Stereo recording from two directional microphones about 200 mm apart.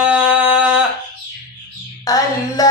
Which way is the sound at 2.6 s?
20° left (ahead or behind).